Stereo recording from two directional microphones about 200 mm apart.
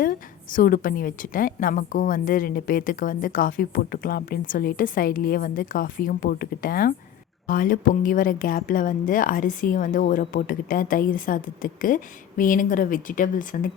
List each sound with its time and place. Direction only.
0.0 s a woman's voice: 45° left (ahead or behind)